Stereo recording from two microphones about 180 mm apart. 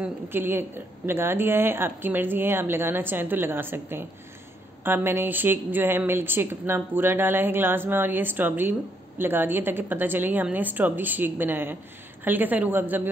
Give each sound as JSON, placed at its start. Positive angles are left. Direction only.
{"t": 0.0, "sound": "a woman's voice", "side_deg": -10}